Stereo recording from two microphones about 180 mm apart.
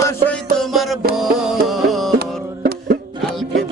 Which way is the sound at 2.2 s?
60° right (ahead or behind).